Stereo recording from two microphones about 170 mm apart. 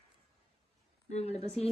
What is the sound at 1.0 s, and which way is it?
Speech, 40° left (ahead or behind).